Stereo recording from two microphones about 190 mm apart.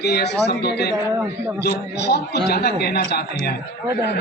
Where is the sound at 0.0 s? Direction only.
60° left (ahead or behind).